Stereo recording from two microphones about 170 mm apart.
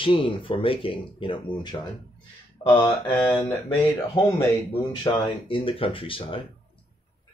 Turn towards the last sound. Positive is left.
turn(degrees=30)  # may be behind; listen again after turning